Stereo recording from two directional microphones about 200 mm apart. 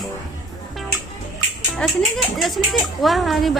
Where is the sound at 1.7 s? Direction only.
Centre (ahead or behind).